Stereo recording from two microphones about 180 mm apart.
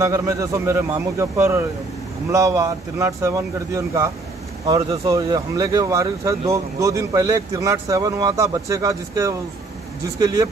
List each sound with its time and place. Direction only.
0.0 s speech: 15° right (ahead or behind)